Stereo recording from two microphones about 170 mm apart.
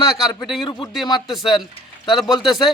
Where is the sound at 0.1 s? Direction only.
5° right (ahead or behind).